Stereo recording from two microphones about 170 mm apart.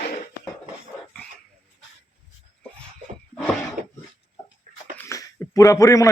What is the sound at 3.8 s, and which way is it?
Throat clearing, 50° right (ahead or behind).